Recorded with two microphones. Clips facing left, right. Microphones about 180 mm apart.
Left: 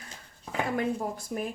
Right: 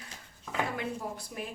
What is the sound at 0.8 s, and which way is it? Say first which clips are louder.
Speech: left 6 dB; 45° left (ahead or behind).